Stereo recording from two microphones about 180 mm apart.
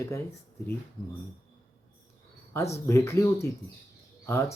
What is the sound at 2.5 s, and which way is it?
Speech, 15° left (ahead or behind).